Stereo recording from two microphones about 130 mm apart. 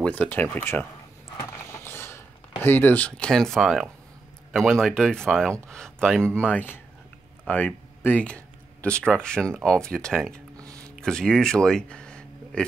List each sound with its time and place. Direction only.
0.0 s speech: 10° left (ahead or behind)
1.7 s a sound: 20° left (ahead or behind)
2.6 s speech: 15° left (ahead or behind)